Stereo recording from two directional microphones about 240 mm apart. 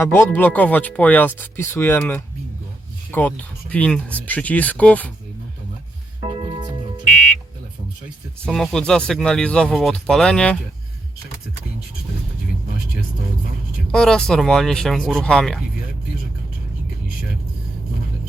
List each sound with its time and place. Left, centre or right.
0.0 s speech: centre
6.3 s music: centre
8.4 s speech: centre
13.9 s speech: centre